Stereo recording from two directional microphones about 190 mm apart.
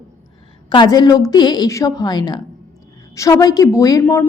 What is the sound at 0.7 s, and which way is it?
A woman's voice, 20° left (ahead or behind).